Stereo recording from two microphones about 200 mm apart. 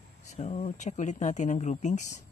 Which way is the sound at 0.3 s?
35° left (ahead or behind).